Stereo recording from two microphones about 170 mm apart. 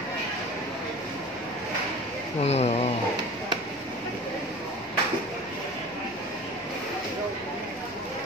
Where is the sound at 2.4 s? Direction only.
40° left (ahead or behind).